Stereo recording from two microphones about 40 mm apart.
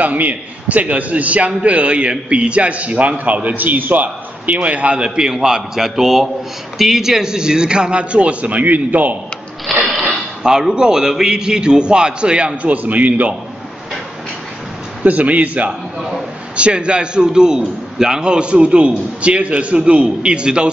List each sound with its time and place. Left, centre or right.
0.0 s a man's voice: right
3.4 s a man's voice: right
5.3 s a man's voice: centre; by 9.1 s right
9.7 s a sound: centre
10.4 s a man's voice: centre
12.6 s a man's voice: right
15.0 s a man's voice: right
16.0 s a sound: centre
16.5 s a man's voice: right